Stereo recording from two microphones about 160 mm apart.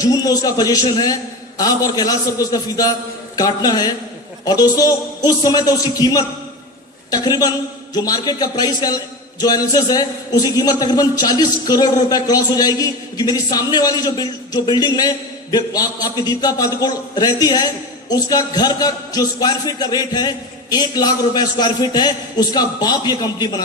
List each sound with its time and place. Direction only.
0.0 s a man's voice: 20° left (ahead or behind)